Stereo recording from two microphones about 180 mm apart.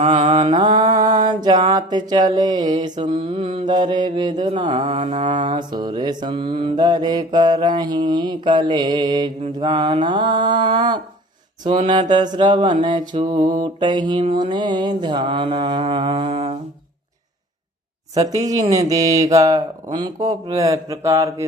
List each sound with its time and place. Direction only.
0.0 s mantra: 30° right (ahead or behind)
18.4 s mantra: 20° right (ahead or behind)